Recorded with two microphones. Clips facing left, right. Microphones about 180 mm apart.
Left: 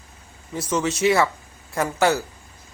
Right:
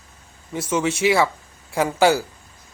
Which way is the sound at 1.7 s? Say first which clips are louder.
Right 3 dB; 10° right (ahead or behind).